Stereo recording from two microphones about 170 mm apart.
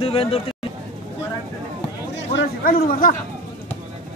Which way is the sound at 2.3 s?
60° left (ahead or behind).